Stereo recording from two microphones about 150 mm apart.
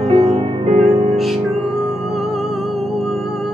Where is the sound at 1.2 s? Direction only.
Centre (ahead or behind).